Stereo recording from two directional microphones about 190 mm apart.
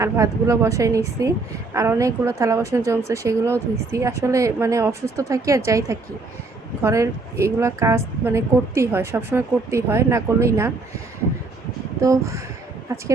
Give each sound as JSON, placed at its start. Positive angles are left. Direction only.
{"t": 0.0, "sound": "speech", "side_deg": -15}
{"t": 11.9, "sound": "speech", "side_deg": -15}